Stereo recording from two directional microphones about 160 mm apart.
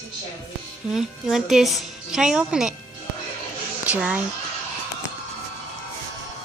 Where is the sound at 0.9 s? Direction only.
5° right (ahead or behind).